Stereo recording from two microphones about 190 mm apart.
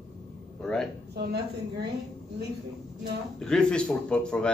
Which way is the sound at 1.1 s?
55° right (ahead or behind).